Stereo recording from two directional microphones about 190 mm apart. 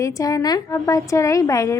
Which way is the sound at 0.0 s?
15° left (ahead or behind).